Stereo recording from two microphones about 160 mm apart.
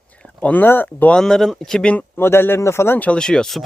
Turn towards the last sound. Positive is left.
turn(degrees=5)  # may be behind; listen again after turning